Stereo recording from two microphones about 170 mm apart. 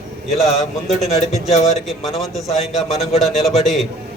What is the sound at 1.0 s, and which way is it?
Speech, 40° left (ahead or behind).